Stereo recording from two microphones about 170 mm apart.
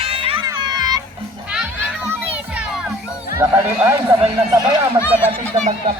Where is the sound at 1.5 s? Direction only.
5° right (ahead or behind).